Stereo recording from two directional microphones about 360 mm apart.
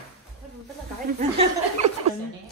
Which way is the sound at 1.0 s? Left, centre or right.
Centre.